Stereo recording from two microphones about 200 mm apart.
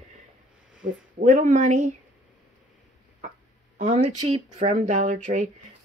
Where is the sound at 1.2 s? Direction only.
40° right (ahead or behind).